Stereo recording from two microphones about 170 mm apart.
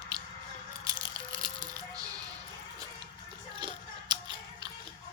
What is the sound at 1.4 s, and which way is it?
Rattle, 20° right (ahead or behind).